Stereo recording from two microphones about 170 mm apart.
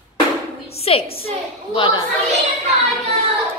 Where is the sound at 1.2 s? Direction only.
30° left (ahead or behind).